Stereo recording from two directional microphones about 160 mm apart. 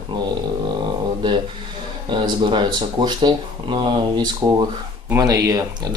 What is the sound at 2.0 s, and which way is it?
Speech, 30° right (ahead or behind).